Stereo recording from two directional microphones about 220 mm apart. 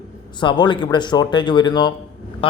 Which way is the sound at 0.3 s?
20° left (ahead or behind).